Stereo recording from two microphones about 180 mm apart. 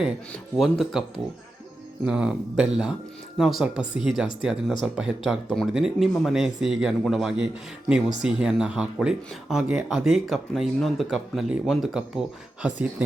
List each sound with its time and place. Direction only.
0.5 s speech: centre (ahead or behind)
2.0 s speech: 5° right (ahead or behind)